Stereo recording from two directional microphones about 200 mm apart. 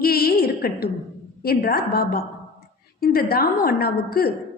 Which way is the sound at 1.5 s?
50° left (ahead or behind).